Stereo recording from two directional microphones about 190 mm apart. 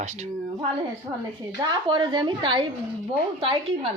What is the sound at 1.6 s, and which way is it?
A woman's voice, 25° right (ahead or behind).